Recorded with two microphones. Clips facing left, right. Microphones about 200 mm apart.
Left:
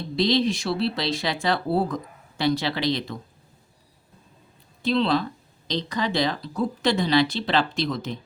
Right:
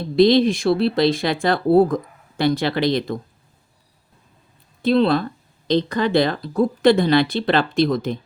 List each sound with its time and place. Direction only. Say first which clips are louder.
0.0 s speech: right 8 dB; 55° right (ahead or behind)
4.8 s speech: right 5 dB; 55° right (ahead or behind)